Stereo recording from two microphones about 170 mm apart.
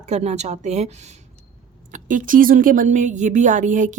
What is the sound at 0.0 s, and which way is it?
Speech, 40° right (ahead or behind).